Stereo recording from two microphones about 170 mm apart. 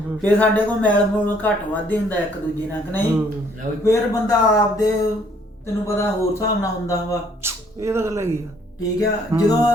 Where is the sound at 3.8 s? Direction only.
15° left (ahead or behind).